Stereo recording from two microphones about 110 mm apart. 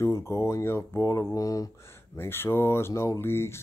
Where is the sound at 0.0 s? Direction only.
25° left (ahead or behind).